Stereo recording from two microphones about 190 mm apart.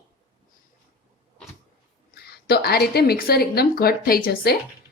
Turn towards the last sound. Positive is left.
turn(degrees=55)  # may be behind; listen again after turning